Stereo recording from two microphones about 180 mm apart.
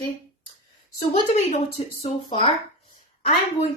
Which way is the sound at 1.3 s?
35° left (ahead or behind).